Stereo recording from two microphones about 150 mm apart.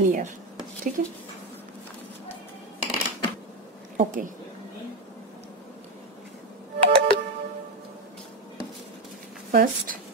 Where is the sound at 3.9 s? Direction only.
60° right (ahead or behind).